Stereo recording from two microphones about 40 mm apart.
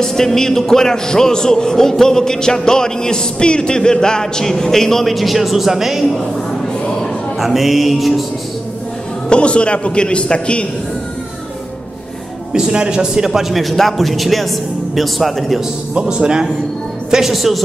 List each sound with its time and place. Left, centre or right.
0.0 s a man's voice: centre
7.3 s a man's voice: centre
9.3 s a man's voice: left
12.5 s a man's voice: right; by 15.6 s centre
15.9 s speech: right
17.1 s a man's voice: centre